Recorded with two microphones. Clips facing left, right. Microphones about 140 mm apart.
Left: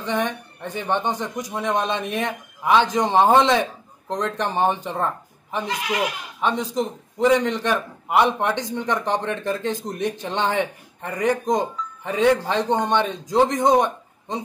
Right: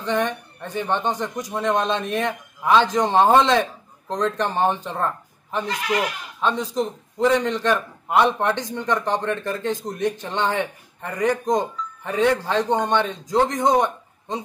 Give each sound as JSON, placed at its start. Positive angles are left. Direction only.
{"t": 0.0, "sound": "speech", "side_deg": 10}
{"t": 10.5, "sound": "speech", "side_deg": 5}